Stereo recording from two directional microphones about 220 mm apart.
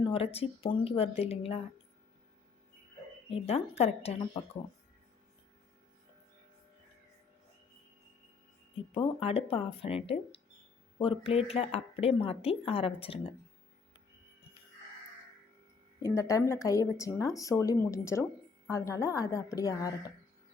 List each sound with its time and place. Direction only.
0.0 s speech: 25° left (ahead or behind)
3.2 s speech: 25° left (ahead or behind)
9.0 s speech: 25° left (ahead or behind)
16.0 s speech: 15° left (ahead or behind)